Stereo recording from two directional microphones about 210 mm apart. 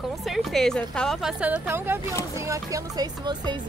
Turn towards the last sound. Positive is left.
turn(degrees=-20)  # may be behind; listen again after turning